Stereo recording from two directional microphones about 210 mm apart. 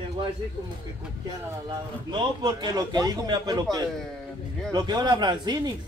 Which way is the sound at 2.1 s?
20° right (ahead or behind).